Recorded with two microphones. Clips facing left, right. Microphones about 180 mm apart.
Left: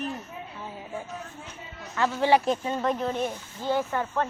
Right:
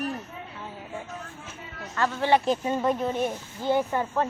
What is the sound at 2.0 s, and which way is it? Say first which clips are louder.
Speech: left 1 dB; 10° left (ahead or behind).